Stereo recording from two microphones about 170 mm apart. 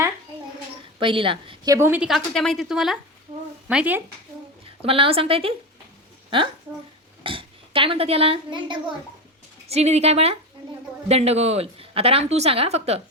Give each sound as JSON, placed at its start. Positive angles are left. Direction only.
{"t": 1.0, "sound": "speech", "side_deg": -30}
{"t": 1.7, "sound": "speech", "side_deg": -10}
{"t": 4.8, "sound": "speech", "side_deg": -35}
{"t": 7.3, "sound": "a child's voice", "side_deg": -30}
{"t": 9.6, "sound": "speech", "side_deg": -40}